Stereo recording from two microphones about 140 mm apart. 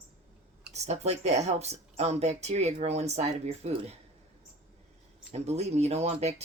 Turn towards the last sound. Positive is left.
turn(degrees=-50)  # may be behind; listen again after turning